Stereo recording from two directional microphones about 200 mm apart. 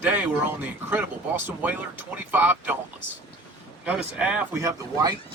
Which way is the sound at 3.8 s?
5° right (ahead or behind).